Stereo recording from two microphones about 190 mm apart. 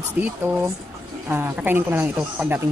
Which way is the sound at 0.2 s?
10° right (ahead or behind).